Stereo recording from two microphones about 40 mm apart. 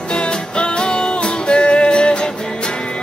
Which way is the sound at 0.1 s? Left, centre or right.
Left.